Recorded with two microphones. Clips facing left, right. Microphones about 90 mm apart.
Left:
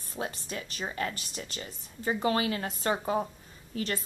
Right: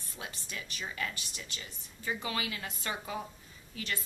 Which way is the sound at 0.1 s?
40° left (ahead or behind).